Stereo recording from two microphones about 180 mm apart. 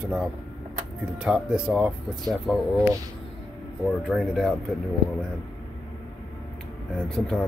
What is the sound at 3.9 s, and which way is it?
Speech, 5° left (ahead or behind).